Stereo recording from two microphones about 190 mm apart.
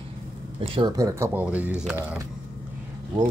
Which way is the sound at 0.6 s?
30° right (ahead or behind).